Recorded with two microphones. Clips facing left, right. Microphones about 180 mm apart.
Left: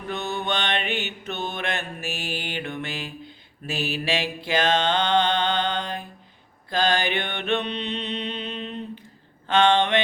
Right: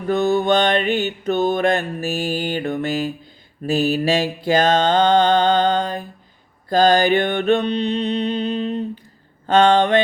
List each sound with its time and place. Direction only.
0.1 s mantra: 40° right (ahead or behind)